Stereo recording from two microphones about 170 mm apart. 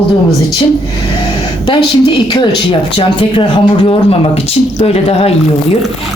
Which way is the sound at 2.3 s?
30° left (ahead or behind).